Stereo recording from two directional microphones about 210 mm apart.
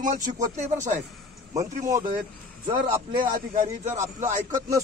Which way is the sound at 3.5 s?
35° right (ahead or behind).